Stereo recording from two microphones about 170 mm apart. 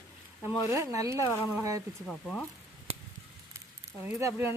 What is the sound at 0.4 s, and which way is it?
Speech, 15° right (ahead or behind).